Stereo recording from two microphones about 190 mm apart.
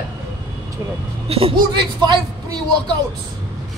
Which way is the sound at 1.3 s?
25° right (ahead or behind).